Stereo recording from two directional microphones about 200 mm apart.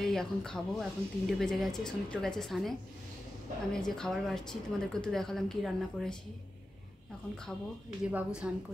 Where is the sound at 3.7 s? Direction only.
5° left (ahead or behind).